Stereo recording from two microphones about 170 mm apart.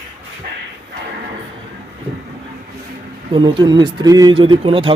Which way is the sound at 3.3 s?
25° right (ahead or behind).